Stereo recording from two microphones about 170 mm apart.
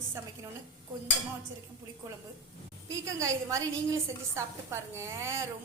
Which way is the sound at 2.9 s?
20° right (ahead or behind).